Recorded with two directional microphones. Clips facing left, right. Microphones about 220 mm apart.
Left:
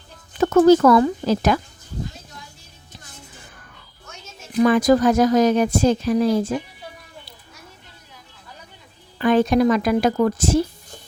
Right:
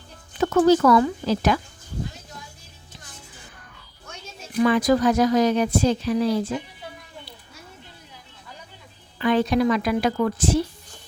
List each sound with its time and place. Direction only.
0.3 s speech: 45° left (ahead or behind)
4.6 s speech: 45° left (ahead or behind)
9.1 s speech: 45° left (ahead or behind)